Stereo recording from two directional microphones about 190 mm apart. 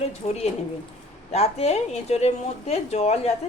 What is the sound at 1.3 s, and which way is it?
Speech, 35° left (ahead or behind).